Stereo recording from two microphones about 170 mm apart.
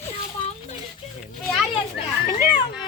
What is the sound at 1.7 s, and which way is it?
Speech, 30° left (ahead or behind).